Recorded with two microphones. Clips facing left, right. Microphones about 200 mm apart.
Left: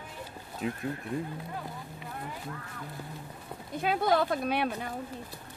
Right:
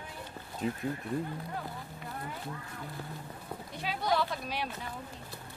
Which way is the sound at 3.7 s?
50° left (ahead or behind).